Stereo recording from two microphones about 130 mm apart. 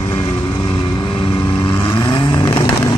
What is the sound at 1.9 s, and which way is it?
Vehicle, 35° left (ahead or behind).